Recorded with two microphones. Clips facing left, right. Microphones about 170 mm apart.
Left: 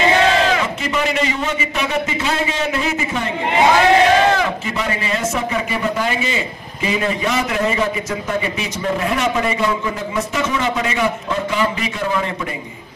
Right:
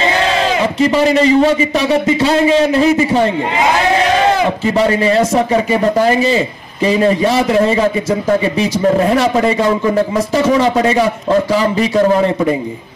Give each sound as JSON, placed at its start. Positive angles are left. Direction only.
{"t": 0.7, "sound": "a man's voice", "side_deg": -35}
{"t": 4.6, "sound": "a man's voice", "side_deg": -35}